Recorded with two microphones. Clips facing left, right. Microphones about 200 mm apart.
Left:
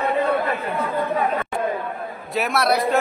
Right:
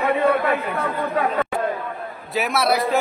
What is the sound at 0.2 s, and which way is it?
Chatter, 70° right (ahead or behind).